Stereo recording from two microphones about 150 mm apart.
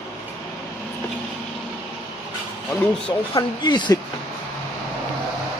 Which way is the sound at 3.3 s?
30° left (ahead or behind).